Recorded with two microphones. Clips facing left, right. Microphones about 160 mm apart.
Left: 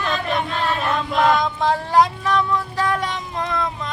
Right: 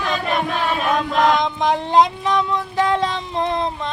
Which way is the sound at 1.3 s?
20° right (ahead or behind).